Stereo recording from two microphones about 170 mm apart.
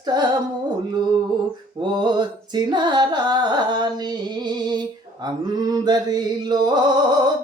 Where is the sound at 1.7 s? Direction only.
25° right (ahead or behind).